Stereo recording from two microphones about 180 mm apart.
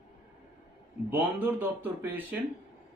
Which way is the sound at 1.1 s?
10° right (ahead or behind).